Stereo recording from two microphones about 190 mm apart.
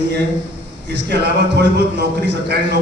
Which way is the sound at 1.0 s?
65° right (ahead or behind).